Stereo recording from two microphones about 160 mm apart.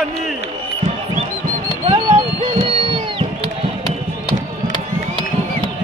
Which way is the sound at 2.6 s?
35° right (ahead or behind).